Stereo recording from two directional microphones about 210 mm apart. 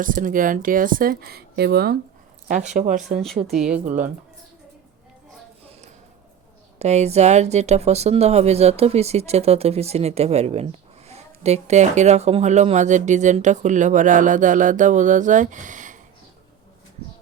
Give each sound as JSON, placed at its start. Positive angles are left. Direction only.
{"t": 0.0, "sound": "speech", "side_deg": -40}
{"t": 2.7, "sound": "speech", "side_deg": -40}
{"t": 3.4, "sound": "speech", "side_deg": 0}
{"t": 6.7, "sound": "speech", "side_deg": -30}